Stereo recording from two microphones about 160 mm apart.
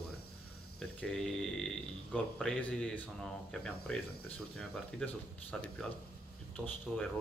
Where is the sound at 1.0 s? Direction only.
5° left (ahead or behind).